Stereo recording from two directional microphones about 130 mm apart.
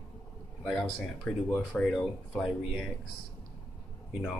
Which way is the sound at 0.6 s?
5° left (ahead or behind).